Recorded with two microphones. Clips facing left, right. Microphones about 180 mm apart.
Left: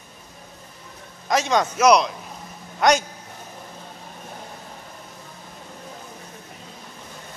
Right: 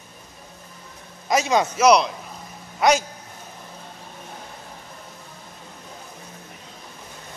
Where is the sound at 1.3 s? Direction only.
5° right (ahead or behind).